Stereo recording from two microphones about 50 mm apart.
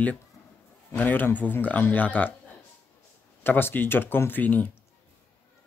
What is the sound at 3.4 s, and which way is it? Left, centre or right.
Speech, left.